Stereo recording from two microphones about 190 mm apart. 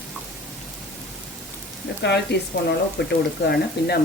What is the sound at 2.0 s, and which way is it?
A woman's voice, 65° left (ahead or behind).